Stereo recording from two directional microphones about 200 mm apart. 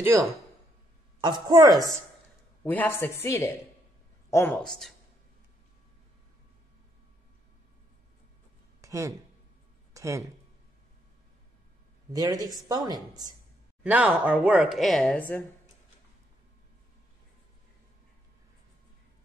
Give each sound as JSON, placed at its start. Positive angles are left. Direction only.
{"t": 0.0, "sound": "speech", "side_deg": -15}
{"t": 2.6, "sound": "a woman's voice", "side_deg": 10}
{"t": 8.8, "sound": "a sound", "side_deg": -15}
{"t": 9.9, "sound": "speech", "side_deg": -15}
{"t": 12.1, "sound": "speech", "side_deg": -20}
{"t": 13.8, "sound": "speech", "side_deg": -5}